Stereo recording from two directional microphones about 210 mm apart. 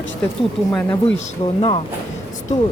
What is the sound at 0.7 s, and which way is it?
Speech, 10° left (ahead or behind).